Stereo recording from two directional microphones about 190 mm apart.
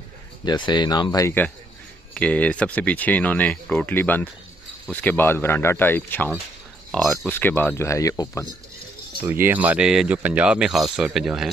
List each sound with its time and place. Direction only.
0.5 s speech: 25° left (ahead or behind)
9.2 s speech: 10° right (ahead or behind)